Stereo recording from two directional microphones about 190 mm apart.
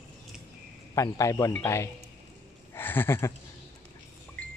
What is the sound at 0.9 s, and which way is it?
Speech, 15° left (ahead or behind).